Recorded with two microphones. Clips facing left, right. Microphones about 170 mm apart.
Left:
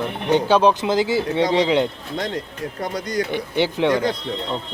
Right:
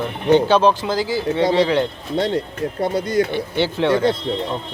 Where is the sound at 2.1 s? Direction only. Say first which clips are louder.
Right 6 dB; 30° right (ahead or behind).